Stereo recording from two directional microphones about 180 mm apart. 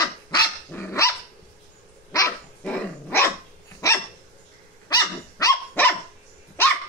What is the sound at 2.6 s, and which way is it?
Dog, 5° left (ahead or behind).